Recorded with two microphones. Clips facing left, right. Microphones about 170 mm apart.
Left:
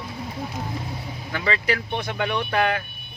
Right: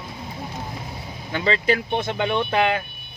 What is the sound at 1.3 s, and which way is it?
Speech, 25° right (ahead or behind).